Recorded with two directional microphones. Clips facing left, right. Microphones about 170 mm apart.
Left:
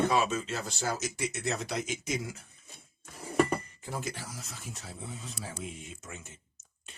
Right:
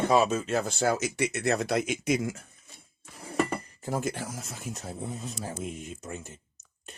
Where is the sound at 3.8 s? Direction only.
50° right (ahead or behind).